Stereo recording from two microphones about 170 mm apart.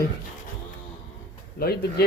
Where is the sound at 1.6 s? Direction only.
65° left (ahead or behind).